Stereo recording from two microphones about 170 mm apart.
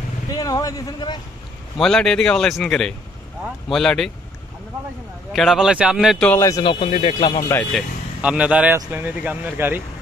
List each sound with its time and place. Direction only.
0.3 s speech: 20° left (ahead or behind)
1.8 s speech: 5° left (ahead or behind)
5.3 s speech: centre (ahead or behind)
6.6 s speech: 30° left (ahead or behind)
7.7 s speech: 5° right (ahead or behind)